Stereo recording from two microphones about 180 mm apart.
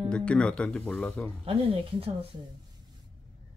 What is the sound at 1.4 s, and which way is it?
Speech, 30° right (ahead or behind).